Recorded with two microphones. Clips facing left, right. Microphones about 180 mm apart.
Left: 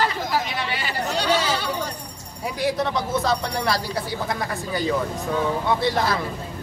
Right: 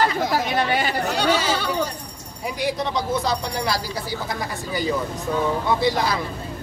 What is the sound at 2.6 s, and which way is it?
Speech, centre (ahead or behind).